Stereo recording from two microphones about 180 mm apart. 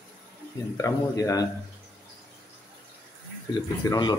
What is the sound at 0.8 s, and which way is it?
Speech, 20° left (ahead or behind).